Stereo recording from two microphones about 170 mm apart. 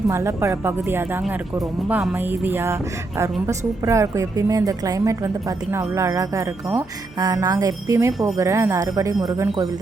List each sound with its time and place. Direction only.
0.1 s speech: 15° right (ahead or behind)
3.8 s a woman's voice: 15° right (ahead or behind)